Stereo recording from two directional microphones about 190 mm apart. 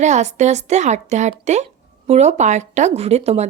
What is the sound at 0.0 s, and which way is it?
A woman's voice, 35° right (ahead or behind).